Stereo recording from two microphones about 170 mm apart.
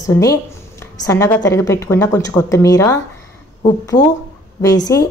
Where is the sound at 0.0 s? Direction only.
20° left (ahead or behind).